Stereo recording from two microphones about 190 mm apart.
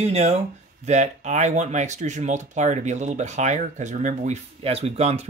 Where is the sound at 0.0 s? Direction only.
35° right (ahead or behind).